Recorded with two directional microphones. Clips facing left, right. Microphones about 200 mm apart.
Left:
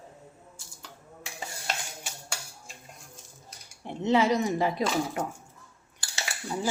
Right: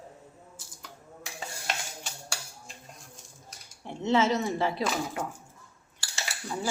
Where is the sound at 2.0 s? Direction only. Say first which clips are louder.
Even; 10° left (ahead or behind).